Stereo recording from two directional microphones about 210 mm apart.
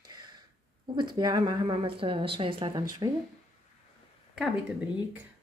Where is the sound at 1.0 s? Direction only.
20° right (ahead or behind).